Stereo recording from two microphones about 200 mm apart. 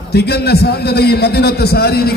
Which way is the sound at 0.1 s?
55° left (ahead or behind).